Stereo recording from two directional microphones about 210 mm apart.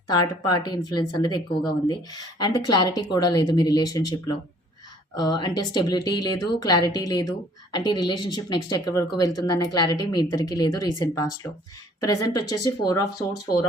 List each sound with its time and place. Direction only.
0.1 s speech: 20° left (ahead or behind)